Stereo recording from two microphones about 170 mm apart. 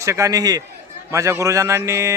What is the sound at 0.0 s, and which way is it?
Speech, 15° right (ahead or behind).